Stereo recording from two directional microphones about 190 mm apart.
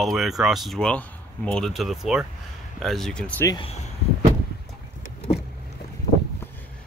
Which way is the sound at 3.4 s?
20° left (ahead or behind).